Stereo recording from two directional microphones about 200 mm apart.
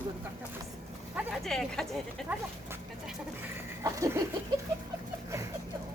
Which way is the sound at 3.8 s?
15° right (ahead or behind).